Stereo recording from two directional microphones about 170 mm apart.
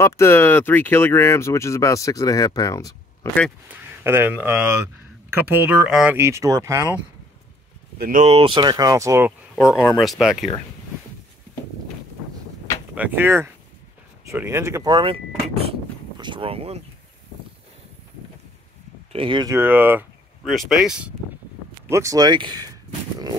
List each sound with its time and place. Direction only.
0.0 s speech: 15° left (ahead or behind)
3.7 s speech: 15° right (ahead or behind)
6.1 s speech: 15° right (ahead or behind)
8.0 s speech: 55° right (ahead or behind)
8.3 s speech: 30° right (ahead or behind)
9.6 s speech: 20° left (ahead or behind)
9.9 s speech: centre (ahead or behind)
12.9 s speech: 10° right (ahead or behind); by 16.8 s 35° right (ahead or behind)
19.1 s speech: 30° right (ahead or behind)
19.5 s speech: 10° right (ahead or behind)
21.8 s speech: 15° right (ahead or behind)